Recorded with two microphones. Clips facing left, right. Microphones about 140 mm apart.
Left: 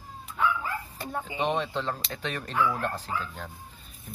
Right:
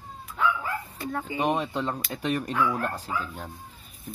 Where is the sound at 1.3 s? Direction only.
10° right (ahead or behind).